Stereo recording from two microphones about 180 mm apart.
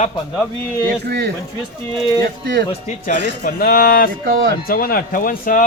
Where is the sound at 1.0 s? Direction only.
65° right (ahead or behind).